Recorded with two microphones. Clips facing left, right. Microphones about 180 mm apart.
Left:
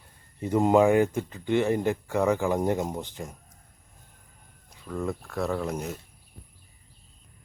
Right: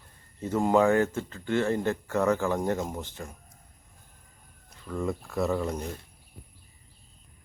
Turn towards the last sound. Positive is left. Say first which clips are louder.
# even
turn(degrees=5)  # may be behind; listen again after turning